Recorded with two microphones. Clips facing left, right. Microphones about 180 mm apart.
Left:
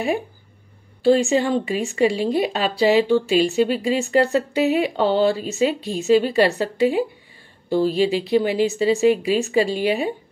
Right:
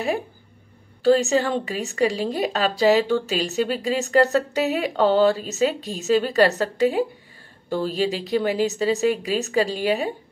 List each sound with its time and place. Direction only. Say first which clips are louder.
1.0 s speech: left 1 dB; 40° right (ahead or behind)